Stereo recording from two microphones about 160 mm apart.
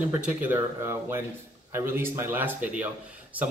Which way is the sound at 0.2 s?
10° right (ahead or behind).